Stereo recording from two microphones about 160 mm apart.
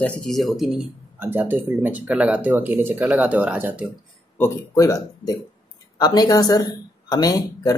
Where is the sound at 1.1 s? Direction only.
15° right (ahead or behind).